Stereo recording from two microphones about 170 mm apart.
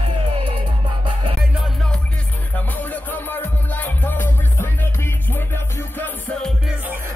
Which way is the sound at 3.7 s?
10° left (ahead or behind).